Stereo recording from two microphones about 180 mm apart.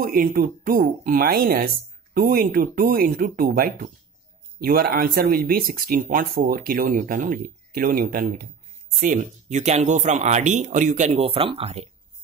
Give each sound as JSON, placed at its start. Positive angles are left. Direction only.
{"t": 0.0, "sound": "speech", "side_deg": -55}